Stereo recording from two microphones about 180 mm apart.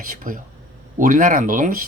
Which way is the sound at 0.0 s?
50° right (ahead or behind).